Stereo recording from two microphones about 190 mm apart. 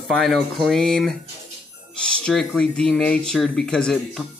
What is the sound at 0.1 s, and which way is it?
Speech, centre (ahead or behind).